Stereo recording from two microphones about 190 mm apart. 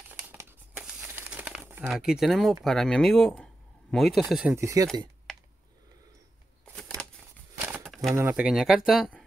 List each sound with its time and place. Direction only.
0.1 s crumpling: 10° right (ahead or behind)
2.6 s speech: centre (ahead or behind)
4.6 s speech: 15° right (ahead or behind)
6.6 s a sound: centre (ahead or behind)
8.1 s speech: 10° right (ahead or behind)